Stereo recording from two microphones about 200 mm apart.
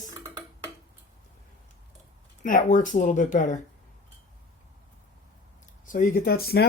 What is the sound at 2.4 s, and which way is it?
Speech, 40° left (ahead or behind).